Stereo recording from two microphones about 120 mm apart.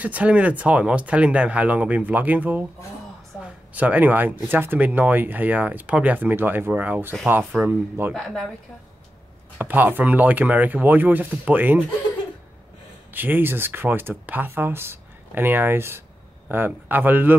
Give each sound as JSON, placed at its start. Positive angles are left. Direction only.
{"t": 0.0, "sound": "speech", "side_deg": -10}
{"t": 8.1, "sound": "speech", "side_deg": 5}
{"t": 9.6, "sound": "speech", "side_deg": -15}
{"t": 13.1, "sound": "speech", "side_deg": -15}